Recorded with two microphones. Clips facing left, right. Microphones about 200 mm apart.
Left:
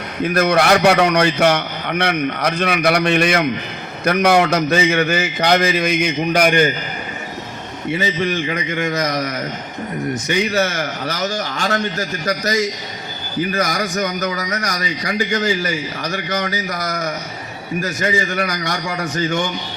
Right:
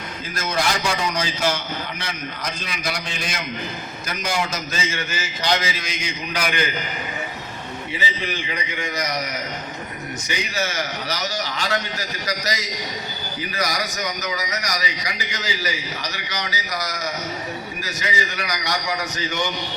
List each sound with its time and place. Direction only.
0.2 s a man's voice: 65° left (ahead or behind)
7.9 s a man's voice: 55° left (ahead or behind)